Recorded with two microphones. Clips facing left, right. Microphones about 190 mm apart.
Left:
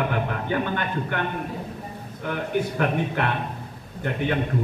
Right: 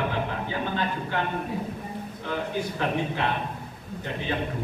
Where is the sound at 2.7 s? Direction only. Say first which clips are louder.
Left 3 dB; 60° left (ahead or behind).